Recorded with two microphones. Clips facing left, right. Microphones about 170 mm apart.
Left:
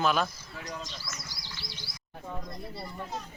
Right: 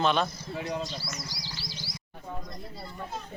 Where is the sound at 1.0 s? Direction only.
55° left (ahead or behind).